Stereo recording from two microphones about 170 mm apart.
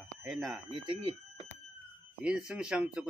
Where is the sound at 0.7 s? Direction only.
30° right (ahead or behind).